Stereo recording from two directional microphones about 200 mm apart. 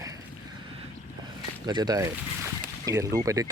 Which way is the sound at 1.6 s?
20° right (ahead or behind).